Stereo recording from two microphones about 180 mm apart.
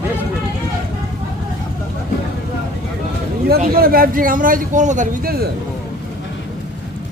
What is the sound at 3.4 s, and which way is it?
A man's voice, 55° right (ahead or behind).